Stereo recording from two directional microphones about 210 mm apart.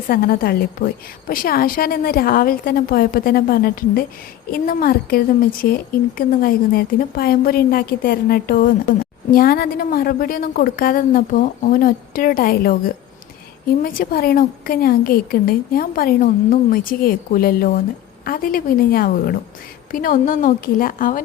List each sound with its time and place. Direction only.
0.1 s a woman's voice: 45° left (ahead or behind)